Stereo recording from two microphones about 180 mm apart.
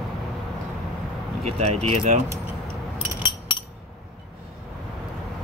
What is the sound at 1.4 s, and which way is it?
Speech, 35° right (ahead or behind).